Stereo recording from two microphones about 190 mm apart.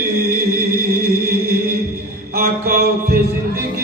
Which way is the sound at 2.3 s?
50° right (ahead or behind).